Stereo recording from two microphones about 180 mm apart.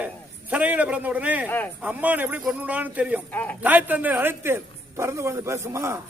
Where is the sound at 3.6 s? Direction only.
10° right (ahead or behind).